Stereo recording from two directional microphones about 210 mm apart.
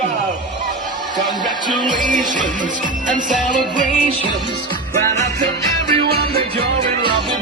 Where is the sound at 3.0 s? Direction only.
40° right (ahead or behind).